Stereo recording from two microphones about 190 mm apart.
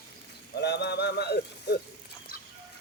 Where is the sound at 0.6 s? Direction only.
60° left (ahead or behind).